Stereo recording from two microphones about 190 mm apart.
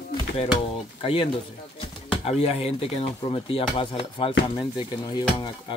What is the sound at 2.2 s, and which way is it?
Speech, 30° left (ahead or behind).